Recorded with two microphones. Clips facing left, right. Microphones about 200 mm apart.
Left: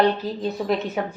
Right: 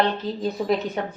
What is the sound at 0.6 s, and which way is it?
Speech, centre (ahead or behind).